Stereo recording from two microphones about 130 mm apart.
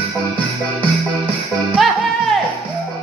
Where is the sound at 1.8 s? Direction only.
Centre (ahead or behind).